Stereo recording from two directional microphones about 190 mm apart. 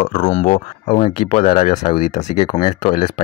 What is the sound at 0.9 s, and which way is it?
Speech, 25° left (ahead or behind).